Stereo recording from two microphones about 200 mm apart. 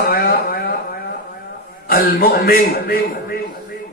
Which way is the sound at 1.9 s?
50° left (ahead or behind).